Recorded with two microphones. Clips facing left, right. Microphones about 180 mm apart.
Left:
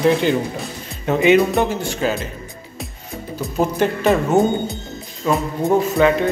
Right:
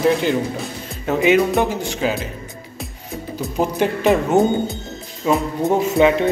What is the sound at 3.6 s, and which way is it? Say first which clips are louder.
Speech: left 1 dB; 15° right (ahead or behind).